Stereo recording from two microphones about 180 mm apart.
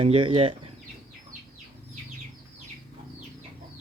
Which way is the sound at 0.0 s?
30° right (ahead or behind).